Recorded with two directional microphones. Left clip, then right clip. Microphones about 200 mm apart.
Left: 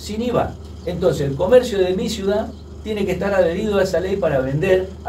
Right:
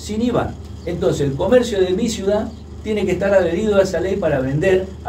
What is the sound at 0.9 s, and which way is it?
Speech, 20° right (ahead or behind).